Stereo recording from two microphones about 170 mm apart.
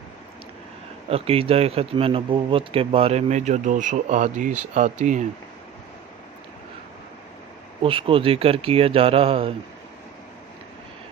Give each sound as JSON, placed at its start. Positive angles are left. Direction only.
{"t": 1.1, "sound": "speech", "side_deg": -35}
{"t": 7.8, "sound": "speech", "side_deg": -30}